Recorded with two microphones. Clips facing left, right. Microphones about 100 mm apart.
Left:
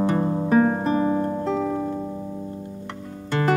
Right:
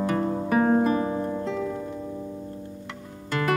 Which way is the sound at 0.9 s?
40° left (ahead or behind).